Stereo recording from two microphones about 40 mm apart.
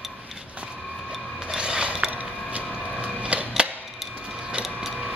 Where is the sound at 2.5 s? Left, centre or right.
Right.